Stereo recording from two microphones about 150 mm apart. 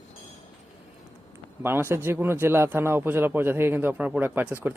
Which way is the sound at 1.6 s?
15° right (ahead or behind).